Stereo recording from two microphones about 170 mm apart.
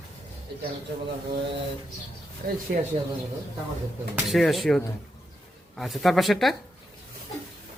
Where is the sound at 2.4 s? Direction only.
60° right (ahead or behind).